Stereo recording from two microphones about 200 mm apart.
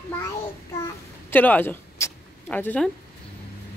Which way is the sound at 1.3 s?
10° left (ahead or behind).